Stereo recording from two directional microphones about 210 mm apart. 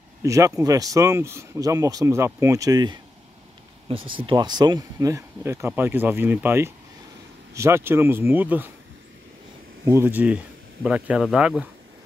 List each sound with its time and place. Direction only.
0.2 s speech: 15° right (ahead or behind)
9.8 s speech: 10° right (ahead or behind)